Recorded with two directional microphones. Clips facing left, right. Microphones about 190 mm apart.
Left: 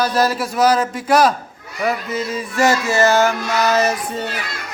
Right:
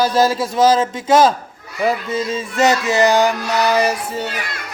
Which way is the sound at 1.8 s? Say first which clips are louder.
Right 2 dB; 30° right (ahead or behind).